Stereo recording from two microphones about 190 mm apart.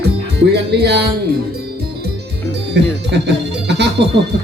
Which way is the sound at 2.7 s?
65° right (ahead or behind).